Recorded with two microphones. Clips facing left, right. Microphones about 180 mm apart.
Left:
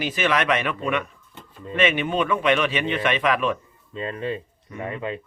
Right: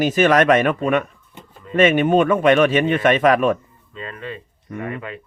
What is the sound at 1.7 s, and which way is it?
Speech, 45° right (ahead or behind).